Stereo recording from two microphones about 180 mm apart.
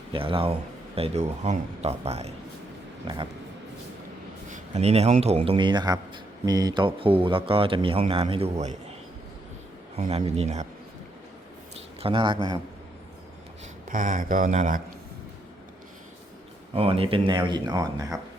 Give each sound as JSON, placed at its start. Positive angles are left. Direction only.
{"t": 0.1, "sound": "speech", "side_deg": -30}
{"t": 4.4, "sound": "a man's voice", "side_deg": -40}
{"t": 11.9, "sound": "speech", "side_deg": -30}
{"t": 13.8, "sound": "speech", "side_deg": -45}
{"t": 16.7, "sound": "speech", "side_deg": -30}